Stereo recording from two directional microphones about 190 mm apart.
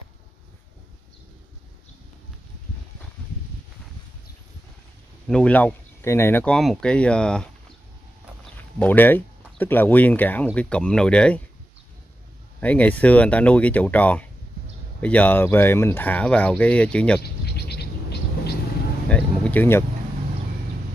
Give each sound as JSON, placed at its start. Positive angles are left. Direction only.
{"t": 5.2, "sound": "speech", "side_deg": 5}
{"t": 8.7, "sound": "speech", "side_deg": 10}
{"t": 12.5, "sound": "speech", "side_deg": 5}
{"t": 17.2, "sound": "insect", "side_deg": 55}
{"t": 19.0, "sound": "a sound", "side_deg": 5}